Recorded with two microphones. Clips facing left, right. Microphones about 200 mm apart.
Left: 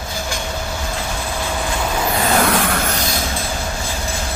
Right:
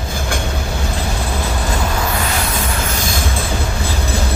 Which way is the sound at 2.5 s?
75° left (ahead or behind).